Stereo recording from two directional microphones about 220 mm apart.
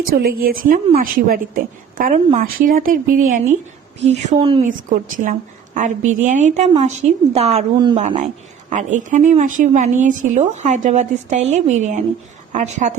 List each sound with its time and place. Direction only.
0.1 s a woman's voice: 40° right (ahead or behind); by 4.7 s 25° right (ahead or behind)
4.9 s a woman's voice: 35° right (ahead or behind)